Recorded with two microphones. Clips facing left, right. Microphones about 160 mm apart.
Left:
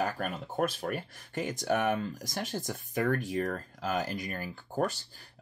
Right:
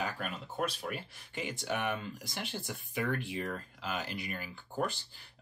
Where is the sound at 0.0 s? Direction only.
45° left (ahead or behind).